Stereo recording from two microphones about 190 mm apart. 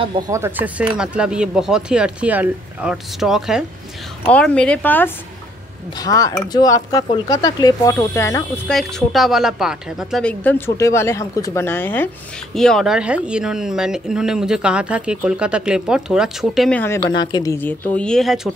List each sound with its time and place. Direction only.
0.3 s speech: 10° right (ahead or behind); by 8.5 s 15° left (ahead or behind)
8.6 s speech: centre (ahead or behind)
10.8 s speech: 15° left (ahead or behind)
17.1 s speech: 25° left (ahead or behind); by 18.5 s centre (ahead or behind)